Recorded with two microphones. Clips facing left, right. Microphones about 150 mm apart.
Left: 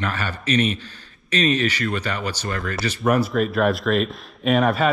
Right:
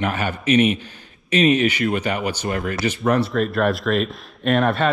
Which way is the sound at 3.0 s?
5° left (ahead or behind).